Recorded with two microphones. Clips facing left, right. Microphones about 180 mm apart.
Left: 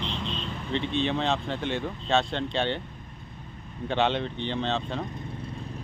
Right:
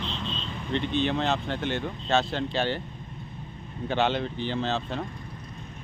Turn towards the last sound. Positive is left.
turn(degrees=0)  # may be behind; listen again after turning